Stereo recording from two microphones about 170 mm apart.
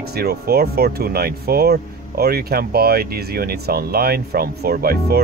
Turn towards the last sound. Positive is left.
turn(degrees=-65)  # may be behind; listen again after turning